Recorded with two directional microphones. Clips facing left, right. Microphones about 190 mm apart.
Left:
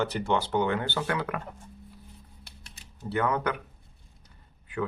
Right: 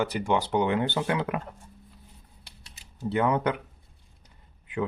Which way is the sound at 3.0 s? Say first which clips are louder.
Right 3 dB; 20° right (ahead or behind).